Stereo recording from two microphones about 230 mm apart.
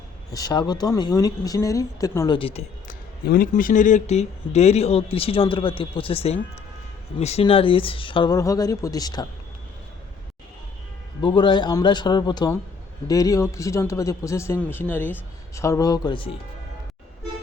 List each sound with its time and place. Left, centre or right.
0.3 s speech: centre
3.2 s speech: left; by 9.2 s centre
11.2 s speech: left